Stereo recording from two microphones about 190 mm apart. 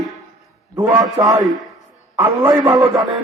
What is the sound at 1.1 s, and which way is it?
A man's voice, 20° right (ahead or behind).